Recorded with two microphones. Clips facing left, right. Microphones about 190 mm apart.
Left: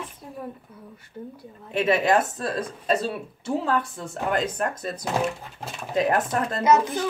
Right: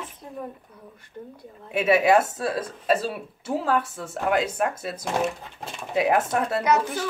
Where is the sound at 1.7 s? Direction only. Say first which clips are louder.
Right 2 dB; 10° right (ahead or behind).